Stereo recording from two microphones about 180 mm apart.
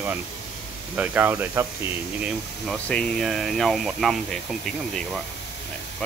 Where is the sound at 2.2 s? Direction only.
5° left (ahead or behind).